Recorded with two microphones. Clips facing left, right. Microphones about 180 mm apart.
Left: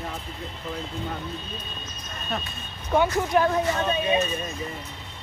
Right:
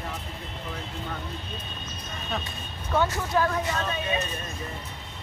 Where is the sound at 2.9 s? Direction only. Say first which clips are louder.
Left 4 dB; 15° left (ahead or behind).